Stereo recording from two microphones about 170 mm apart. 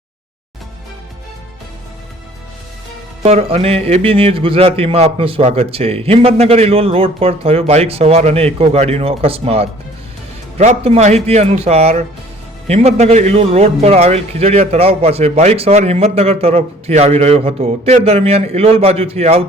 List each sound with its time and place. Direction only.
3.2 s a man's voice: 40° right (ahead or behind)